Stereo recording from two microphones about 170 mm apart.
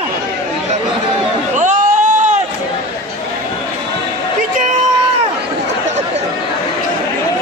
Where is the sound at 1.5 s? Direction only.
50° right (ahead or behind).